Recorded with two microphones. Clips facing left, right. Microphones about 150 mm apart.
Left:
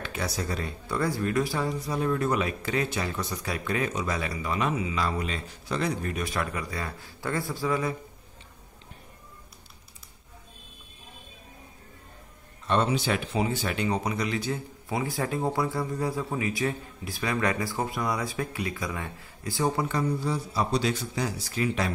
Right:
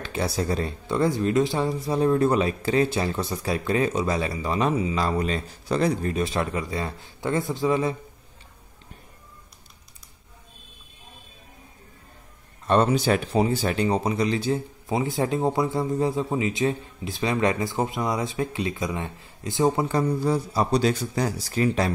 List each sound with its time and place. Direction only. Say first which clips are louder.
0.0 s speech: right 5 dB; 30° right (ahead or behind)
12.6 s speech: right 5 dB; 45° right (ahead or behind); by 19.9 s 20° right (ahead or behind)
19.9 s speech: right 5 dB; 40° right (ahead or behind)